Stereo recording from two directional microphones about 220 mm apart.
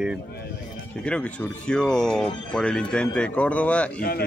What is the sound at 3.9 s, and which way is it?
Speech, 45° left (ahead or behind).